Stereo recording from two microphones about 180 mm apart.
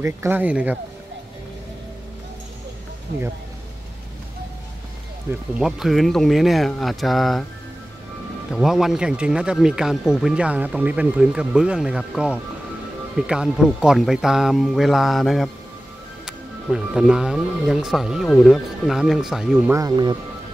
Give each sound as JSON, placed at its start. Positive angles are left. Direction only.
{"t": 0.0, "sound": "speech", "side_deg": -10}
{"t": 5.3, "sound": "speech", "side_deg": -5}
{"t": 8.5, "sound": "speech", "side_deg": 0}
{"t": 19.7, "sound": "speech", "side_deg": -20}